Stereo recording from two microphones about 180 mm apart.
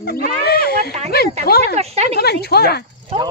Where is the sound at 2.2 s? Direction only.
60° left (ahead or behind).